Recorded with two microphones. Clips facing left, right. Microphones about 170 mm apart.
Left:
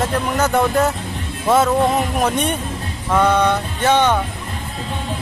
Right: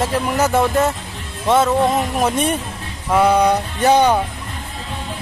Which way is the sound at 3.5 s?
35° right (ahead or behind).